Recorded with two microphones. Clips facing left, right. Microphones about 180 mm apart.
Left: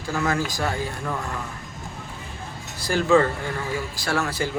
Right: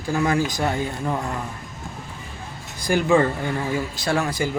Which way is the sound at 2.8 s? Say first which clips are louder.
Right 1 dB; 15° right (ahead or behind).